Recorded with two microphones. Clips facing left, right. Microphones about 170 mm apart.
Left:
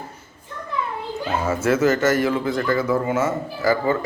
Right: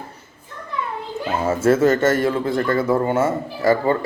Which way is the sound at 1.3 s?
30° right (ahead or behind).